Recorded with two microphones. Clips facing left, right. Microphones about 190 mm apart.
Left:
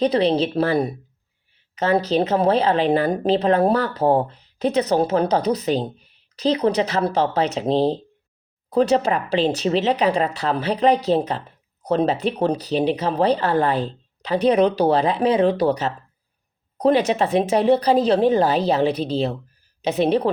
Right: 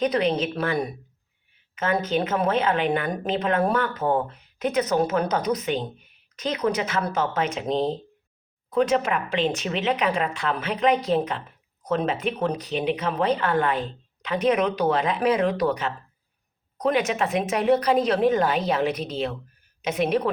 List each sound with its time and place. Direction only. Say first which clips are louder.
0.0 s speech: left 4 dB; 30° left (ahead or behind)